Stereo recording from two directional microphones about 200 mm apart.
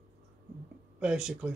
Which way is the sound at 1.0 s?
5° right (ahead or behind).